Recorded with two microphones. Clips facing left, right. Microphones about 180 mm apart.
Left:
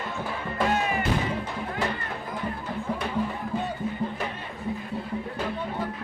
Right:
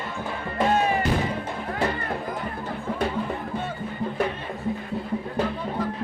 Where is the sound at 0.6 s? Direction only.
30° right (ahead or behind).